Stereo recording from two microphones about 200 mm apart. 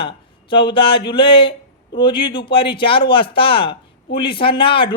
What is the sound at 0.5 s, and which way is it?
Speech, 25° left (ahead or behind).